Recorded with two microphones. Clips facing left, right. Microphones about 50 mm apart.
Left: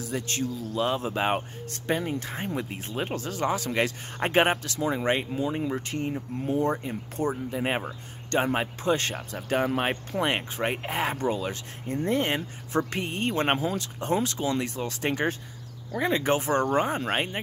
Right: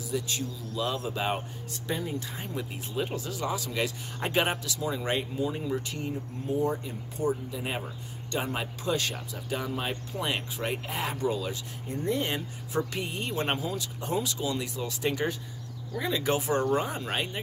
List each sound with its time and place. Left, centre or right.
0.0 s speech: left
0.7 s speech: left
1.7 s speech: left
5.8 s speech: left
6.5 s speech: left
9.5 s speech: left